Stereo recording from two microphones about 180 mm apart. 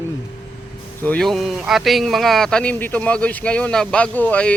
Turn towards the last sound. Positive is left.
turn(degrees=10)  # may be behind; listen again after turning